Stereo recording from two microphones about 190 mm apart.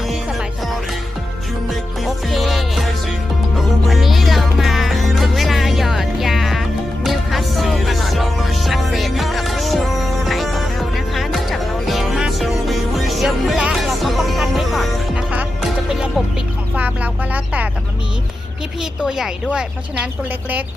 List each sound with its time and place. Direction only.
0.3 s music: centre (ahead or behind)
2.0 s music: centre (ahead or behind)
16.7 s a sound: 10° right (ahead or behind)
18.8 s a woman's voice: 5° right (ahead or behind)